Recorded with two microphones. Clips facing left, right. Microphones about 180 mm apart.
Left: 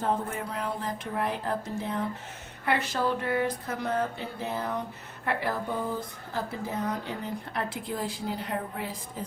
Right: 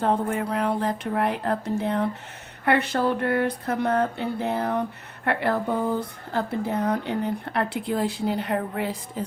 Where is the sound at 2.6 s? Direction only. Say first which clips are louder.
Right 6 dB; 60° right (ahead or behind).